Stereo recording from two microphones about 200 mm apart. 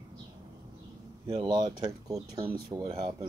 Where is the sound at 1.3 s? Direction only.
25° right (ahead or behind).